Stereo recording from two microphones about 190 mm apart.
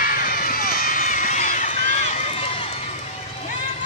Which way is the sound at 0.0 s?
50° left (ahead or behind).